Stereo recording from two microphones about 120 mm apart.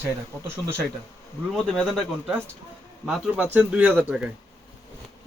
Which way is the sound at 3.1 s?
15° right (ahead or behind).